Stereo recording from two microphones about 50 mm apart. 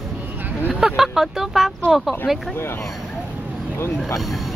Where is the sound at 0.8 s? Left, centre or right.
Centre.